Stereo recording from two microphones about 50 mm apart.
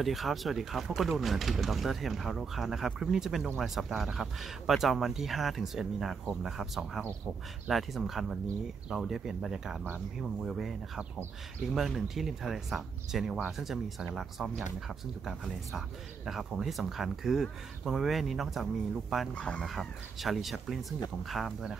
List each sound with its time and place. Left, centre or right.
0.0 s speech: centre
11.7 s speech: centre
19.3 s speech: left
19.6 s speech: centre